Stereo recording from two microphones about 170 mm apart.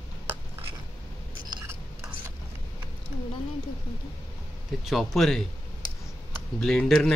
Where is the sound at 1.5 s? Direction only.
15° right (ahead or behind).